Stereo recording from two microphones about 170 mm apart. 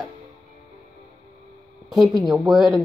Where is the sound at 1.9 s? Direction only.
Centre (ahead or behind).